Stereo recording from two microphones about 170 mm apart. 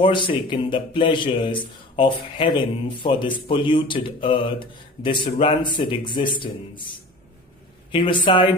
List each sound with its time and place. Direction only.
0.0 s a man's voice: 30° left (ahead or behind)
7.9 s a woman's voice: 30° left (ahead or behind)